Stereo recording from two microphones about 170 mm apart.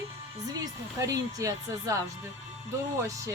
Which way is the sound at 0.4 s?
20° right (ahead or behind).